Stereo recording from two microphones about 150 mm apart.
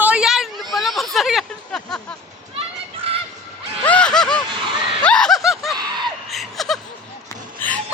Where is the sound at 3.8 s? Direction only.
10° left (ahead or behind).